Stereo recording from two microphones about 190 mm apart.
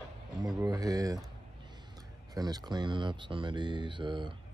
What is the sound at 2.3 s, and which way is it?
Speech, 20° right (ahead or behind).